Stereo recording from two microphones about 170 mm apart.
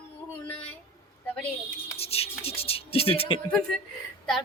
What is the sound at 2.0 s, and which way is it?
Speech, 35° left (ahead or behind).